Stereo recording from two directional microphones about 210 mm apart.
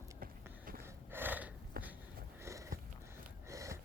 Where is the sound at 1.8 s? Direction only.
45° right (ahead or behind).